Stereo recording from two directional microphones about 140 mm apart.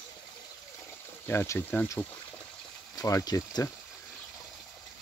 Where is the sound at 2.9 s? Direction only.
25° left (ahead or behind).